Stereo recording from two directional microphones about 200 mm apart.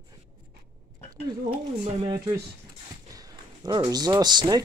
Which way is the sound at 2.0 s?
20° right (ahead or behind).